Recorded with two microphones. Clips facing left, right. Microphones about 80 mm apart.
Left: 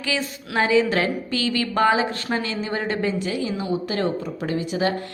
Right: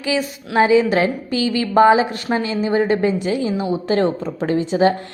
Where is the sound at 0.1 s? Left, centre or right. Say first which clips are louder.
Right 6 dB; centre.